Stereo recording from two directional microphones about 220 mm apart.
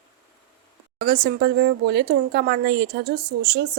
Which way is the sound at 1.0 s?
45° right (ahead or behind).